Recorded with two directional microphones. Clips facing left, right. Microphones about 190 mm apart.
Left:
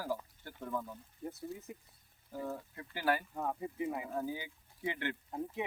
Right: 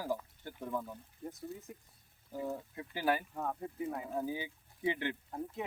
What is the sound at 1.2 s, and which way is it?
Speech, centre (ahead or behind).